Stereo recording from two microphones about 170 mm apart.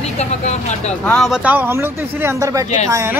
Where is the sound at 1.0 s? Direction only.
5° left (ahead or behind).